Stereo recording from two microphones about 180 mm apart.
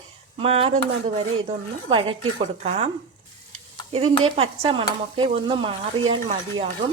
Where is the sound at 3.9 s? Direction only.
30° right (ahead or behind).